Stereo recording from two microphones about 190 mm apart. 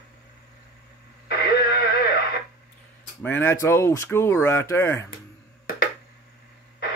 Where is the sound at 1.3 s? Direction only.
55° left (ahead or behind).